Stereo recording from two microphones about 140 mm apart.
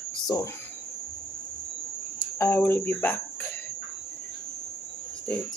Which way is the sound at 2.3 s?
15° left (ahead or behind).